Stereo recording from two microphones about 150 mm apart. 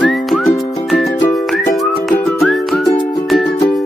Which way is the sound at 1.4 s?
Centre (ahead or behind).